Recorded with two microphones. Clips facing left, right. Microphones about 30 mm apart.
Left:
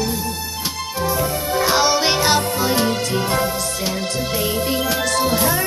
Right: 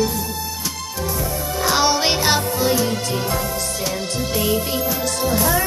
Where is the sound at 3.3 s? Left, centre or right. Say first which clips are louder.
Left 3 dB; left.